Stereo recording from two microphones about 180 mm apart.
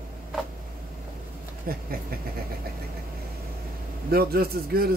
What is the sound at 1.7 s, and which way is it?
Speech, 55° right (ahead or behind).